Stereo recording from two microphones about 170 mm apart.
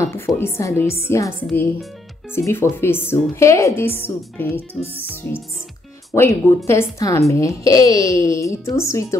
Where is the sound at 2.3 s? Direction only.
15° left (ahead or behind).